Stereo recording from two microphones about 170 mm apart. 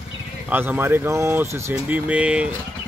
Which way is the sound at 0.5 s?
10° right (ahead or behind).